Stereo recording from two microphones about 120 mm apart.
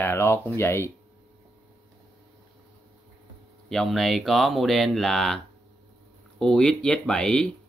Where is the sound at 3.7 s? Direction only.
Centre (ahead or behind).